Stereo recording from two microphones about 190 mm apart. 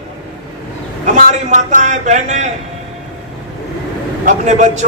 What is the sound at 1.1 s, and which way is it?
A man's voice, 40° right (ahead or behind).